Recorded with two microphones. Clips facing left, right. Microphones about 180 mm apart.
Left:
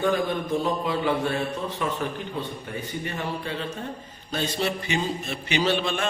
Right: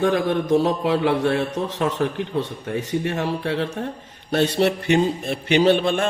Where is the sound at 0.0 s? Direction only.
80° right.